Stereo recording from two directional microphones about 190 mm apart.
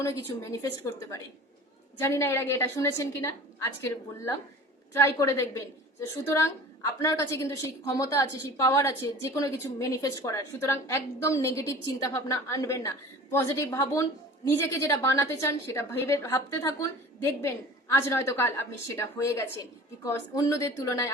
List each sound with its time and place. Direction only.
0.5 s a woman's voice: 15° left (ahead or behind)